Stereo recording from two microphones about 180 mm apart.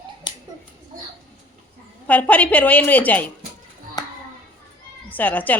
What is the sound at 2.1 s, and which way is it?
A woman's voice, 10° left (ahead or behind).